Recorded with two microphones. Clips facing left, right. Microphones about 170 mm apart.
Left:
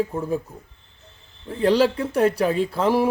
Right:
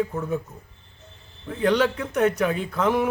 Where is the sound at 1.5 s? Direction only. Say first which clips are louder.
Left 3 dB; 30° left (ahead or behind).